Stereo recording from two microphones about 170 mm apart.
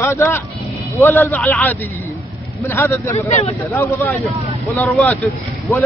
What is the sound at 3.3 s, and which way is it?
Speech, 40° left (ahead or behind).